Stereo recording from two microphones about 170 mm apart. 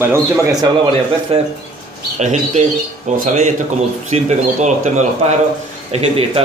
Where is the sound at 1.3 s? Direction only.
35° right (ahead or behind).